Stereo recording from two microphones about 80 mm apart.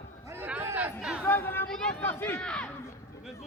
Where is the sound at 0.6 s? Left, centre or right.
Right.